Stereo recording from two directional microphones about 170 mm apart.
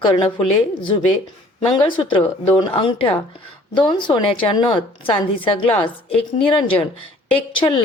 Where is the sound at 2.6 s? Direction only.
30° left (ahead or behind).